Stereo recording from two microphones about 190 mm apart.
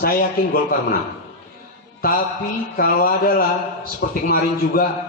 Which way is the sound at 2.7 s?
50° left (ahead or behind).